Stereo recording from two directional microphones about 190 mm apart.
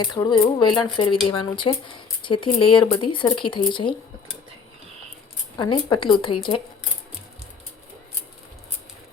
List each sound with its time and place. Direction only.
0.0 s speech: 25° left (ahead or behind)
5.5 s speech: 25° left (ahead or behind)